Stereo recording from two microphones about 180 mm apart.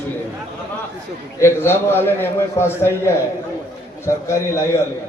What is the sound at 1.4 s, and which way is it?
A man's voice, 15° left (ahead or behind).